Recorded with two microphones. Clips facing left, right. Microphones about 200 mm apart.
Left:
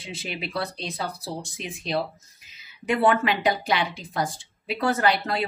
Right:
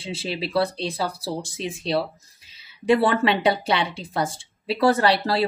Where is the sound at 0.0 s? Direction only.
30° right (ahead or behind).